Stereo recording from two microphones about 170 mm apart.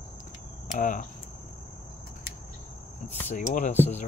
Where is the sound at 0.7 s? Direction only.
50° left (ahead or behind).